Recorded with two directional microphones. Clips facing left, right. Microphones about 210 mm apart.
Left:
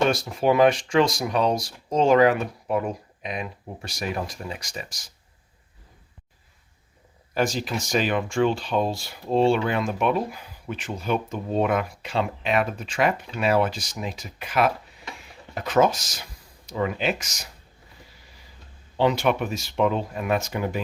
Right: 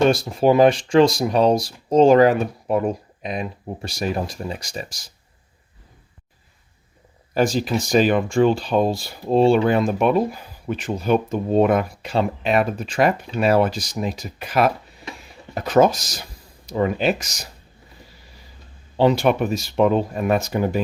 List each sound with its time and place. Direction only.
0.1 s speech: 30° right (ahead or behind)
7.3 s speech: 35° right (ahead or behind)
18.9 s speech: 35° right (ahead or behind)